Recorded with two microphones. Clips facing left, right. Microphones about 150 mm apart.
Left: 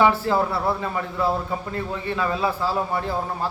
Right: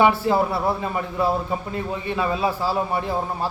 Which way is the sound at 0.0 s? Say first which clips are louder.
Right 1 dB; 20° right (ahead or behind).